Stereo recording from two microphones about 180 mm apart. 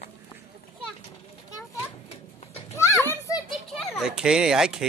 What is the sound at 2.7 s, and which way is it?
Children playing, 15° left (ahead or behind).